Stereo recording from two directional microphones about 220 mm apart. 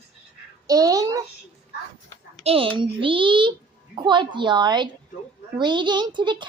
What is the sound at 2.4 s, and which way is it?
A woman's voice, 25° right (ahead or behind).